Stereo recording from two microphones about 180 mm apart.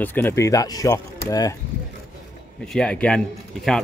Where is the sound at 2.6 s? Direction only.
5° left (ahead or behind).